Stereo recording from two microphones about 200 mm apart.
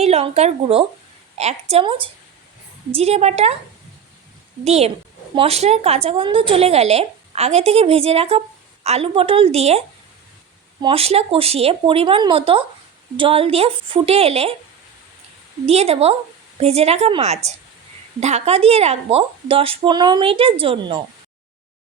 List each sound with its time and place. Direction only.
0.0 s a woman's voice: 30° right (ahead or behind)
4.6 s a woman's voice: 30° right (ahead or behind)
15.6 s a woman's voice: 30° right (ahead or behind)